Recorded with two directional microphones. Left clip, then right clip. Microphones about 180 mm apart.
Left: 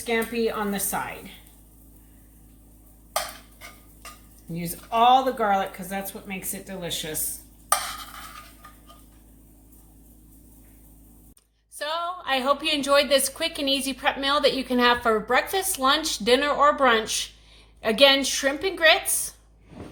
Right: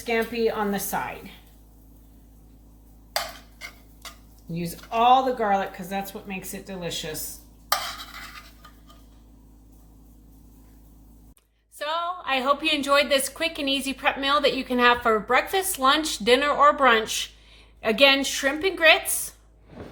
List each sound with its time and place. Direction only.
0.0 s a woman's voice: 25° right (ahead or behind)
4.5 s a woman's voice: 20° right (ahead or behind)
11.8 s a woman's voice: 5° left (ahead or behind)